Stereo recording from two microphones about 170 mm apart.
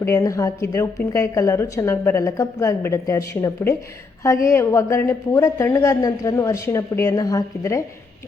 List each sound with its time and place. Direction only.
0.0 s a woman's voice: 20° left (ahead or behind)